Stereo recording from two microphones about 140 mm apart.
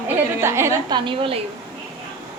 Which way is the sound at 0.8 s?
35° right (ahead or behind).